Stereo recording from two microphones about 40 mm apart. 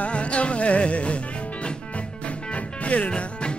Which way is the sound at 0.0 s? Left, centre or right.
Left.